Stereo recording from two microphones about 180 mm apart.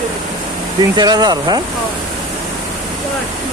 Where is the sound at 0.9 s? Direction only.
20° right (ahead or behind).